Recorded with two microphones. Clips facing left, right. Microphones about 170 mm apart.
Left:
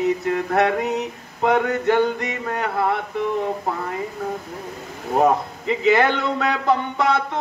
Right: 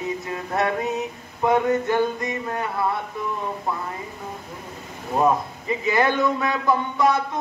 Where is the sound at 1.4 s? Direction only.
70° left (ahead or behind).